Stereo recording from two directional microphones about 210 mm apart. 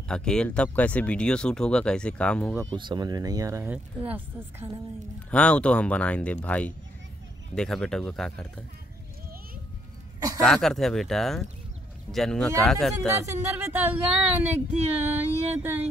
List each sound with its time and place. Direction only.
0.1 s speech: 5° left (ahead or behind)
2.7 s speech: 20° right (ahead or behind)
5.3 s speech: 5° left (ahead or behind)
10.4 s speech: centre (ahead or behind)
13.2 s speech: 15° right (ahead or behind)